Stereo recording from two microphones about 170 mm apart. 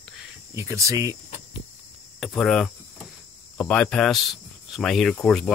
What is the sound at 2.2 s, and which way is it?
Speech, centre (ahead or behind).